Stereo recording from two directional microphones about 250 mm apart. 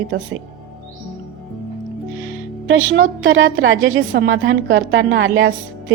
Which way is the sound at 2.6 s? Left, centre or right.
Right.